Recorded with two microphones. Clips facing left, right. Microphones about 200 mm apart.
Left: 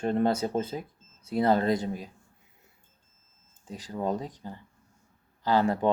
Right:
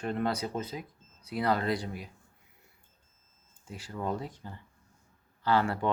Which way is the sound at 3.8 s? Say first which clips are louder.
Left 4 dB; 20° left (ahead or behind).